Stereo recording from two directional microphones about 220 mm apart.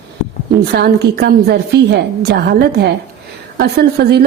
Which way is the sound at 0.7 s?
45° right (ahead or behind).